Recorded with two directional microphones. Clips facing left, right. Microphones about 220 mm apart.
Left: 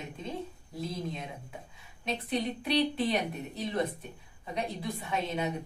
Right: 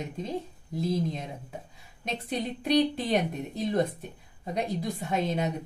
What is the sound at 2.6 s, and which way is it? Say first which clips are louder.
Speech: right 6 dB; 40° right (ahead or behind).